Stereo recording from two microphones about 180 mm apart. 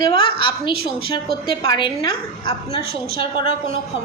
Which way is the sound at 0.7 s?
60° right (ahead or behind).